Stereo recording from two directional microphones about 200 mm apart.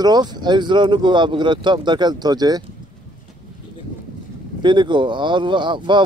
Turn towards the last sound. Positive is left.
turn(degrees=-25)  # may be behind; listen again after turning